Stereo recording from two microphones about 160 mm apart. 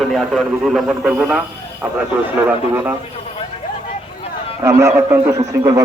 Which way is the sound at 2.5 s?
10° right (ahead or behind).